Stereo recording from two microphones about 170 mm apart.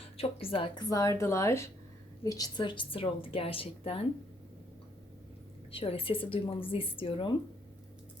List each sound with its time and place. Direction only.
0.2 s a woman's voice: 35° left (ahead or behind)
5.7 s a woman's voice: 35° left (ahead or behind)